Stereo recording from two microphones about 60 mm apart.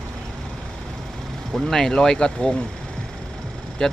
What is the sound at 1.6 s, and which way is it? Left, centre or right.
Speech, centre.